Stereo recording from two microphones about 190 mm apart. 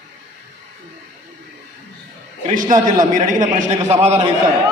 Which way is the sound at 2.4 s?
45° right (ahead or behind).